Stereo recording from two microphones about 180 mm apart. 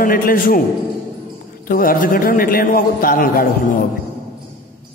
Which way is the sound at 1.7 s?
50° left (ahead or behind).